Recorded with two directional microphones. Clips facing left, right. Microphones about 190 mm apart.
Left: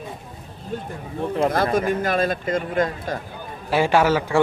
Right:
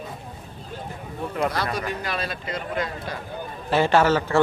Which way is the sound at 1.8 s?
50° left (ahead or behind).